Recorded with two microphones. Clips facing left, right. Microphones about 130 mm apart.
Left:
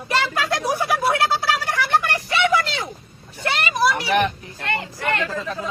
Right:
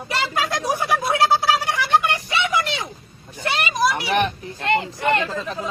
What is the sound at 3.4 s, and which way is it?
Vehicle, 15° right (ahead or behind).